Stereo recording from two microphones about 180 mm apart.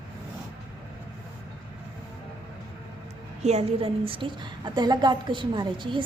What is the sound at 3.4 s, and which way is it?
A woman's voice, 35° right (ahead or behind).